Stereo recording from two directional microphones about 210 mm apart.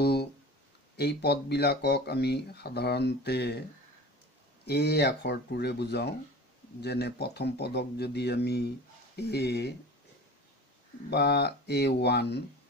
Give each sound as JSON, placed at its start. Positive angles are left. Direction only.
{"t": 0.0, "sound": "a sound", "side_deg": 50}
{"t": 0.9, "sound": "speech", "side_deg": 50}
{"t": 4.6, "sound": "speech", "side_deg": 50}
{"t": 11.1, "sound": "speech", "side_deg": 50}